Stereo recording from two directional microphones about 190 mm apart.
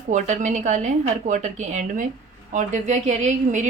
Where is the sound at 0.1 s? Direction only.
40° right (ahead or behind).